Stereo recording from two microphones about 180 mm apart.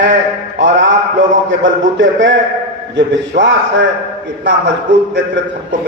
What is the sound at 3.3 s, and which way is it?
Speech, 80° right.